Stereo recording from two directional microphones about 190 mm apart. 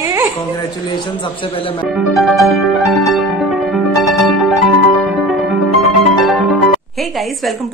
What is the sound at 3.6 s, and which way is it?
Music, centre (ahead or behind).